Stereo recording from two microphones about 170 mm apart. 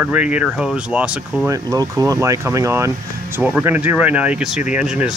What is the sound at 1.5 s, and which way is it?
Speech, 20° right (ahead or behind).